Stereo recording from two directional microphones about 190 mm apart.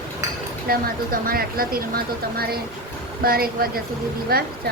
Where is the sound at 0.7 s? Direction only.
50° right (ahead or behind).